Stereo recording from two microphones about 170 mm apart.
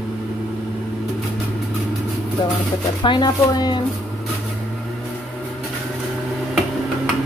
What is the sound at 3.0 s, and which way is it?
Speech, 25° left (ahead or behind).